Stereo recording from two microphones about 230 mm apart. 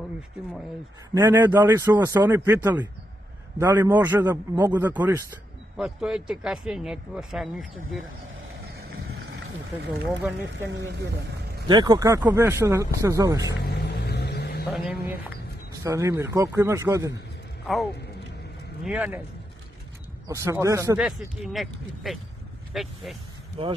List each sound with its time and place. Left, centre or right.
1.1 s speech: centre
10.0 s speech: centre
11.6 s speech: centre
13.7 s vehicle: left
14.7 s speech: centre
15.8 s speech: centre
18.9 s speech: centre
20.2 s speech: centre
21.0 s speech: centre
23.6 s speech: right